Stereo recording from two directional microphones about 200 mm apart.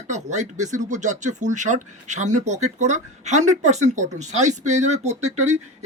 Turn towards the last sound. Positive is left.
turn(degrees=-35)  # may be behind; listen again after turning